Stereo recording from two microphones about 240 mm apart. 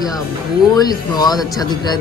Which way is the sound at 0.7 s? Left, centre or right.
Centre.